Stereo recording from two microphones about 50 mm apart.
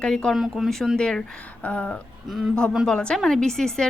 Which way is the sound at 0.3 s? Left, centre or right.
Centre.